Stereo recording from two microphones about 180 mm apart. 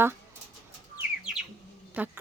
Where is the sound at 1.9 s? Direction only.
10° right (ahead or behind).